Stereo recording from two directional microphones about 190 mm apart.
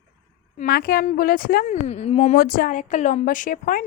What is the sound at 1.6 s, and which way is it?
A woman's voice, 35° left (ahead or behind).